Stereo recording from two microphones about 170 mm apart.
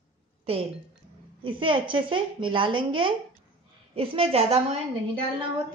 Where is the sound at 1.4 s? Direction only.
30° right (ahead or behind).